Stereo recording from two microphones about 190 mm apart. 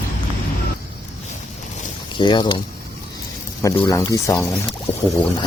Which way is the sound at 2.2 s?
25° left (ahead or behind).